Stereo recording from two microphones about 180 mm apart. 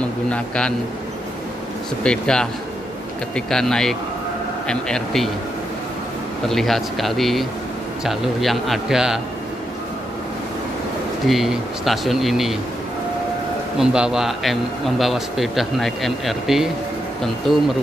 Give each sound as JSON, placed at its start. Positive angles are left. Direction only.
{"t": 0.3, "sound": "a man's voice", "side_deg": 5}
{"t": 2.0, "sound": "a man's voice", "side_deg": 5}
{"t": 6.5, "sound": "a man's voice", "side_deg": 0}
{"t": 11.2, "sound": "a man's voice", "side_deg": 0}
{"t": 13.7, "sound": "a man's voice", "side_deg": -5}